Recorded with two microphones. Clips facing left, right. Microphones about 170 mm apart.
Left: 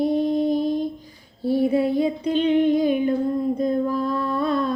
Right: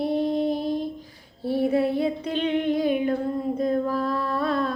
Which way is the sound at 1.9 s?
Centre (ahead or behind).